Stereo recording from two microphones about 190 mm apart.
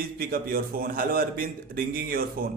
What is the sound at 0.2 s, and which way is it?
A man's voice, 50° right (ahead or behind).